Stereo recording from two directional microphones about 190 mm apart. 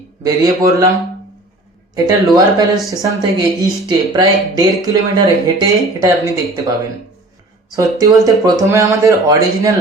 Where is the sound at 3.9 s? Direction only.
20° right (ahead or behind).